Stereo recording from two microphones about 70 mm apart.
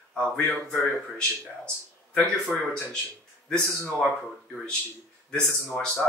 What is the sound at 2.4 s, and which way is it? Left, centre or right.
Speech, centre.